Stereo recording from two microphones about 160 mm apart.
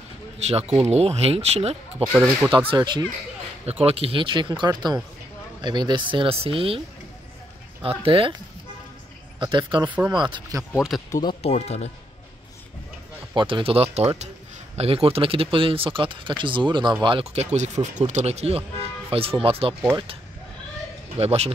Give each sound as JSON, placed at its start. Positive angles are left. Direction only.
{"t": 0.4, "sound": "speech", "side_deg": -40}
{"t": 8.0, "sound": "speech", "side_deg": -35}
{"t": 9.4, "sound": "speech", "side_deg": -30}
{"t": 9.8, "sound": "speech", "side_deg": -10}
{"t": 10.1, "sound": "speech", "side_deg": -30}
{"t": 10.9, "sound": "speech", "side_deg": 0}
{"t": 11.2, "sound": "speech", "side_deg": 40}
{"t": 13.3, "sound": "speech", "side_deg": -30}
{"t": 21.2, "sound": "speech", "side_deg": -40}